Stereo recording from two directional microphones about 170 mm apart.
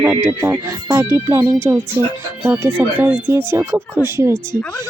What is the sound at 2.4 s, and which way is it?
Speech, 10° right (ahead or behind).